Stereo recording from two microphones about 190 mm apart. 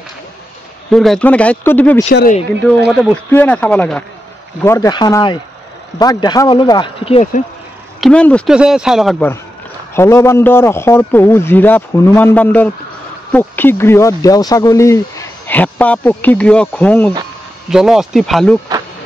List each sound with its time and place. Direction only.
0.9 s speech: centre (ahead or behind); by 7.4 s 30° left (ahead or behind)
8.0 s speech: 5° left (ahead or behind)
9.9 s speech: 15° left (ahead or behind)
17.6 s speech: 5° right (ahead or behind)